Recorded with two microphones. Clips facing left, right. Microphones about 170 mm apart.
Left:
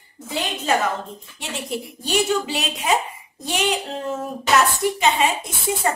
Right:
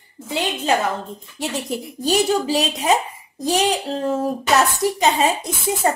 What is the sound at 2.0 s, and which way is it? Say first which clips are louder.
A woman's voice: right 3 dB; 35° right (ahead or behind).